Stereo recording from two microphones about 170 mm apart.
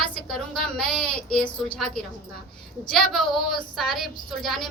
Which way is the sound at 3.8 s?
Centre (ahead or behind).